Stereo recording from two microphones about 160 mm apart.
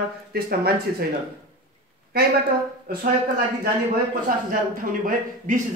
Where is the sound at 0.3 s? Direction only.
75° right (ahead or behind).